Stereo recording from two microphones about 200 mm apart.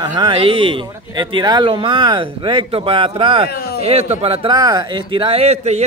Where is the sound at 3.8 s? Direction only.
30° right (ahead or behind).